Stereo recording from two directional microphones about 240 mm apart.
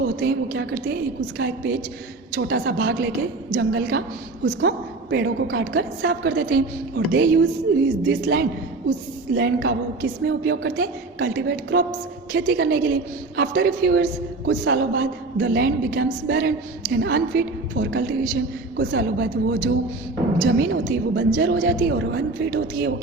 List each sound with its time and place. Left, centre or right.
0.0 s a woman's voice: right